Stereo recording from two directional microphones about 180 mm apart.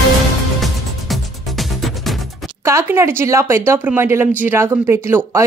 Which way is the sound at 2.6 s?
15° right (ahead or behind).